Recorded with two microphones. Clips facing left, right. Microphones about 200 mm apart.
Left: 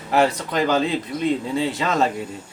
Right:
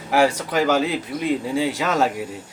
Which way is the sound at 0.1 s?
10° right (ahead or behind).